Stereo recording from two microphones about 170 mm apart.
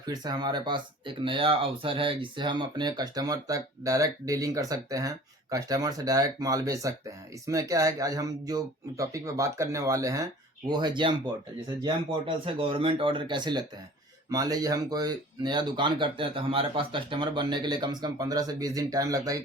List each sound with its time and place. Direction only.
0.0 s speech: 25° right (ahead or behind)